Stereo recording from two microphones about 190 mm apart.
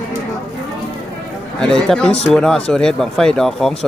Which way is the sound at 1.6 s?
5° left (ahead or behind).